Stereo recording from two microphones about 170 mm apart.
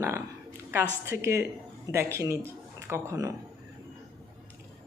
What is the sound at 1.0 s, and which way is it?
A woman's voice, 15° right (ahead or behind).